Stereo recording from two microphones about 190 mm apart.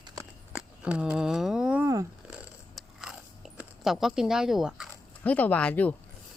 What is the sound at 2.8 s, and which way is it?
Chewing, 5° right (ahead or behind).